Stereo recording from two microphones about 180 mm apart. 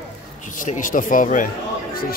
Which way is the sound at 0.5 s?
45° left (ahead or behind).